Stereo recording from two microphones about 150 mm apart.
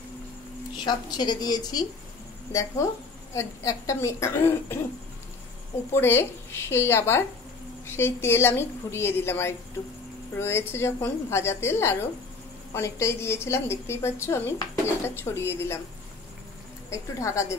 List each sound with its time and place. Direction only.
0.7 s a woman's voice: 30° left (ahead or behind)
3.3 s a woman's voice: 20° left (ahead or behind)
5.9 s a woman's voice: 15° left (ahead or behind)
16.9 s a woman's voice: 20° left (ahead or behind)